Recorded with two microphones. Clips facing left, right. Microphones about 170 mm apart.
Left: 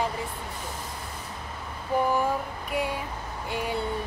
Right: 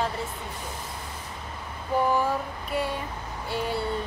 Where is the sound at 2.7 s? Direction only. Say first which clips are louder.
Even; 10° left (ahead or behind).